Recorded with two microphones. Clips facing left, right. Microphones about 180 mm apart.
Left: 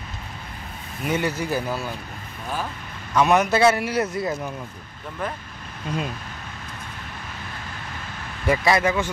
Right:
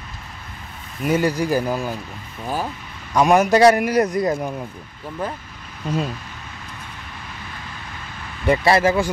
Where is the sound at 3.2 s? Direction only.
10° right (ahead or behind).